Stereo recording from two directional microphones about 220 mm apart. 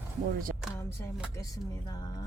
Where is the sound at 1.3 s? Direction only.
15° left (ahead or behind).